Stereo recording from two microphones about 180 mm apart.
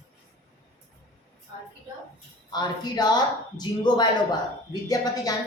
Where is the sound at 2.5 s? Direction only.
25° left (ahead or behind).